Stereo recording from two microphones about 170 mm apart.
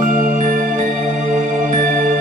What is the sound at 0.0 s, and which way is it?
Music, 50° right (ahead or behind).